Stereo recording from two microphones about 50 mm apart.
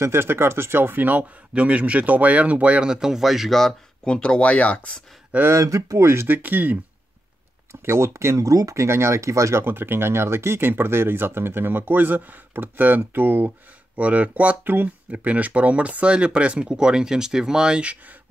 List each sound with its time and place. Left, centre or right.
0.0 s speech: right
1.5 s speech: right
2.9 s speech: centre
4.0 s speech: centre
5.5 s speech: right
6.2 s speech: right
7.8 s speech: right
9.7 s speech: right
13.9 s speech: right